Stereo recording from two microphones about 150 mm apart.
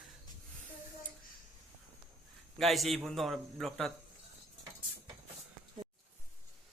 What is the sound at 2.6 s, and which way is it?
Speech, centre (ahead or behind).